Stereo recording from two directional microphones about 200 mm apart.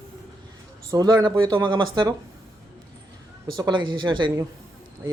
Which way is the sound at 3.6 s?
25° right (ahead or behind).